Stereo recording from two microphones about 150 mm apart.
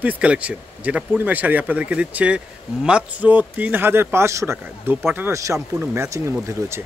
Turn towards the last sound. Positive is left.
turn(degrees=-20)  # may be behind; listen again after turning